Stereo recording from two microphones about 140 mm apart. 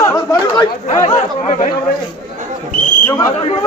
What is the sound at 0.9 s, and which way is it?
Speech, 60° left (ahead or behind).